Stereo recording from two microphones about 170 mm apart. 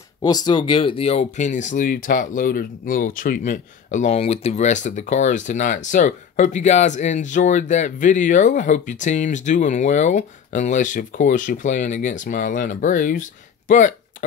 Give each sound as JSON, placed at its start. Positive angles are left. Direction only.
{"t": 0.2, "sound": "speech", "side_deg": 25}